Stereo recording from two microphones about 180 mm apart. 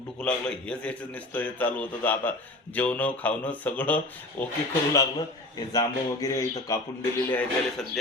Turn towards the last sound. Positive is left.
turn(degrees=10)  # may be behind; listen again after turning